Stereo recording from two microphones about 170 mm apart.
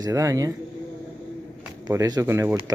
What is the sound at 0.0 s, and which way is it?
Speech, 20° right (ahead or behind).